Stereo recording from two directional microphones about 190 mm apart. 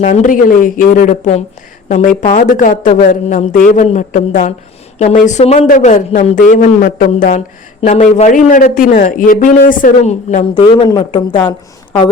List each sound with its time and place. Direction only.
0.0 s a man's voice: 40° left (ahead or behind)